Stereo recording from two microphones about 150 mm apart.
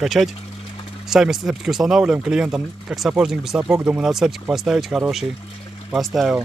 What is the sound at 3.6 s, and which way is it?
Speech, 20° right (ahead or behind).